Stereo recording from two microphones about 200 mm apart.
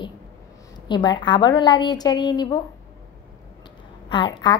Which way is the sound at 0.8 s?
20° left (ahead or behind).